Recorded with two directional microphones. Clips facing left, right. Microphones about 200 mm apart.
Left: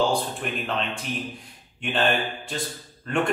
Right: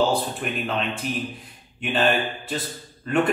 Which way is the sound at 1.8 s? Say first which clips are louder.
Right 2 dB; centre (ahead or behind).